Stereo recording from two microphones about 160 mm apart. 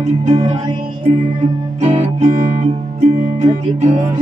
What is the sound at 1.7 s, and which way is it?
Music, 45° right (ahead or behind).